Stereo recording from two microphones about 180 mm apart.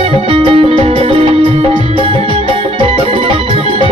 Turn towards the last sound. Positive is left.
turn(degrees=-30)  # may be behind; listen again after turning